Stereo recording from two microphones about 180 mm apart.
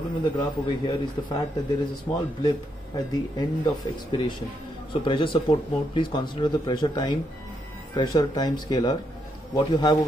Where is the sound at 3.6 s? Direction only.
25° left (ahead or behind).